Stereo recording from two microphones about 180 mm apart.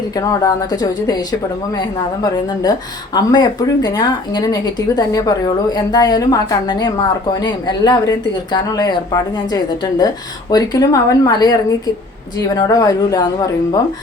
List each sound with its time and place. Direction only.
0.2 s speech: 20° left (ahead or behind)